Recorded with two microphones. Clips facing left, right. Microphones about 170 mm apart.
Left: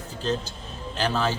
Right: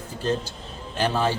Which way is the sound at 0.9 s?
15° right (ahead or behind).